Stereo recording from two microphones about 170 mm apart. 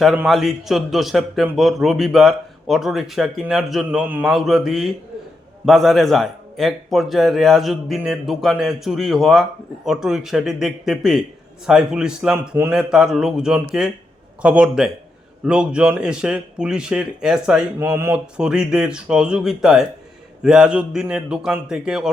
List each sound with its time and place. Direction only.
0.3 s a man's voice: centre (ahead or behind)
17.7 s speech: 15° right (ahead or behind)
18.3 s a man's voice: 5° right (ahead or behind)